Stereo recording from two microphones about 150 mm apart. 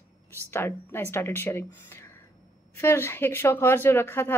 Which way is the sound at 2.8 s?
15° left (ahead or behind).